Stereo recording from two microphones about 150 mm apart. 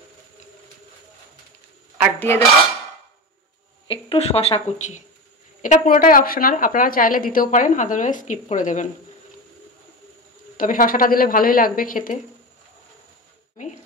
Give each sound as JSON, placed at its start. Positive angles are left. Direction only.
{"t": 2.1, "sound": "cutlery", "side_deg": 15}
{"t": 3.8, "sound": "a woman's voice", "side_deg": 35}
{"t": 10.6, "sound": "a woman's voice", "side_deg": 70}